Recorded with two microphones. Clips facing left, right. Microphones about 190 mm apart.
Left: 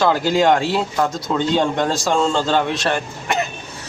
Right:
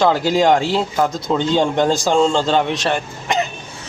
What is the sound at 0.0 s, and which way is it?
Speech, 20° right (ahead or behind).